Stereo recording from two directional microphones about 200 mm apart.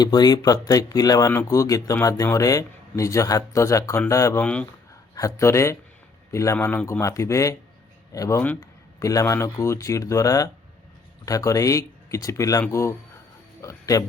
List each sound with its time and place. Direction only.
0.0 s speech: 20° left (ahead or behind)